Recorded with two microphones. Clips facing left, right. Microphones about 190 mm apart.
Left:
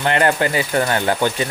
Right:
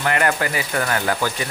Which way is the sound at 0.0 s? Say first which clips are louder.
Left 3 dB; 30° left (ahead or behind).